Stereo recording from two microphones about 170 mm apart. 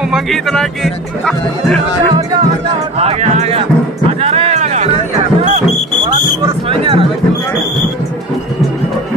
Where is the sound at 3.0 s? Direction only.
40° right (ahead or behind).